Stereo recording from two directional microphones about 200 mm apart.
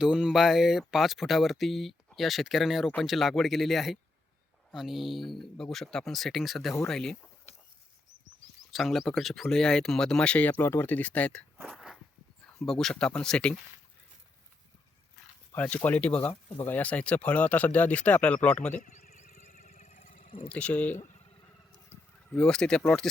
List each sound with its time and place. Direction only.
0.0 s speech: 5° right (ahead or behind)
8.7 s speech: centre (ahead or behind)
11.7 s walk: centre (ahead or behind)
12.5 s speech: centre (ahead or behind)
15.5 s speech: 10° left (ahead or behind)
18.8 s a sound: 35° left (ahead or behind)
20.5 s speech: 5° left (ahead or behind)
22.3 s speech: 5° left (ahead or behind)